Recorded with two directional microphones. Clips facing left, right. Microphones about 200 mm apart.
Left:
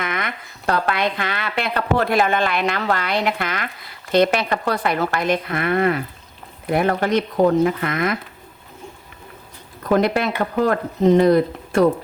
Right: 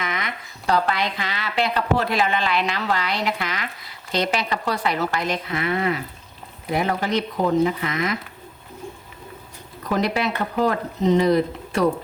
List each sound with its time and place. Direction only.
0.0 s speech: 55° left (ahead or behind)
9.9 s speech: 55° left (ahead or behind)